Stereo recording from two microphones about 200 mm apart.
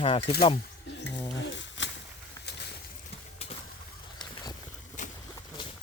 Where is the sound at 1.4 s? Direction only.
65° left (ahead or behind).